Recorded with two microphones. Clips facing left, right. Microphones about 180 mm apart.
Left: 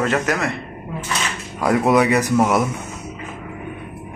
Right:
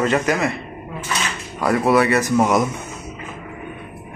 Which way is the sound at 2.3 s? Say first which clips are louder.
Even; centre (ahead or behind).